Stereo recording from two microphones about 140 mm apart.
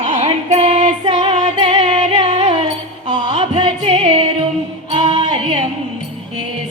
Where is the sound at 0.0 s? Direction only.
55° right (ahead or behind).